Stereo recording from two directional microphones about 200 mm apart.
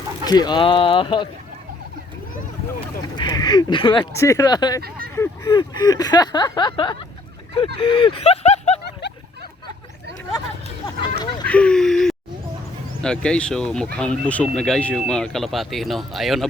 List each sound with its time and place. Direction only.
0.3 s speech: 20° left (ahead or behind)
3.2 s speech: 20° left (ahead or behind)
8.8 s a sound: 55° left (ahead or behind)
11.0 s speech: 20° left (ahead or behind)
11.4 s speech: 5° left (ahead or behind)